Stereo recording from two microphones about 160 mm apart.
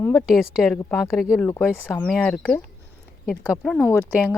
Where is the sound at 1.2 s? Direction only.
Centre (ahead or behind).